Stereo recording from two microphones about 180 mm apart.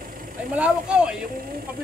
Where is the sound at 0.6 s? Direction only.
5° right (ahead or behind).